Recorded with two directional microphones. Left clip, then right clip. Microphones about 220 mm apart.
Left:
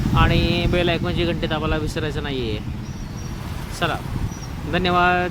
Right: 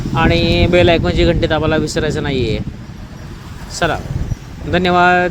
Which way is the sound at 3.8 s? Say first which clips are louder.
Right 7 dB; 20° right (ahead or behind).